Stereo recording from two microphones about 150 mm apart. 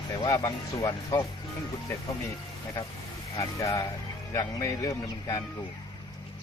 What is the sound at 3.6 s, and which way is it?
A man's voice, 20° left (ahead or behind).